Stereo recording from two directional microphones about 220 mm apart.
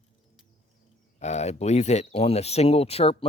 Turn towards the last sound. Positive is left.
turn(degrees=25)  # may be behind; listen again after turning